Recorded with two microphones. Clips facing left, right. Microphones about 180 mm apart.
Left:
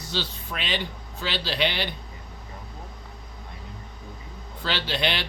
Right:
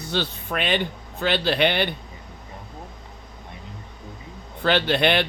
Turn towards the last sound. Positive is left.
turn(degrees=-55)  # may be behind; listen again after turning